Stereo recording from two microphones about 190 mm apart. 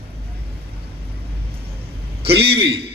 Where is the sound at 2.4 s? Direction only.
60° right (ahead or behind).